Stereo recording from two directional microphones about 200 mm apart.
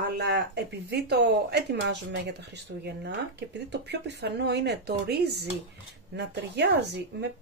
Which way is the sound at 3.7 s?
60° right (ahead or behind).